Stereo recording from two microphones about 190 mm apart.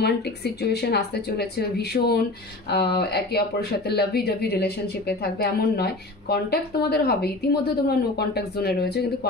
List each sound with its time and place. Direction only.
0.0 s speech: 60° left (ahead or behind)